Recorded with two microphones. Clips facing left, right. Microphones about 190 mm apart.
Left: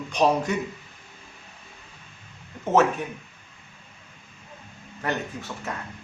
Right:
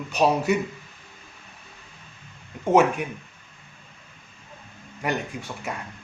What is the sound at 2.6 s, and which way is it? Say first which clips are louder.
Speech: right 2 dB; 10° right (ahead or behind).